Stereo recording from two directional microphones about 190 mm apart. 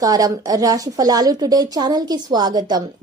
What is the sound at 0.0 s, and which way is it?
A woman's voice, 20° right (ahead or behind).